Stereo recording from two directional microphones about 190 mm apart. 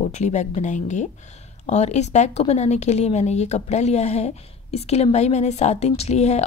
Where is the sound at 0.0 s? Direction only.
35° left (ahead or behind).